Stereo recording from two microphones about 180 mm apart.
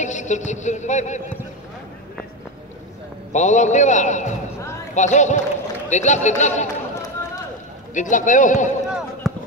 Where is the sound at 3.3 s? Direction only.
40° left (ahead or behind).